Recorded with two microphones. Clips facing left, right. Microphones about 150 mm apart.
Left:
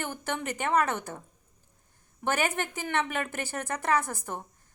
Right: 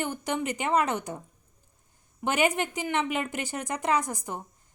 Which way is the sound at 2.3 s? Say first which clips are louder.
Right 3 dB; 15° right (ahead or behind).